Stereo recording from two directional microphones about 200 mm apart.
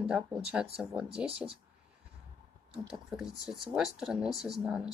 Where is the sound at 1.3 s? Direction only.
30° right (ahead or behind).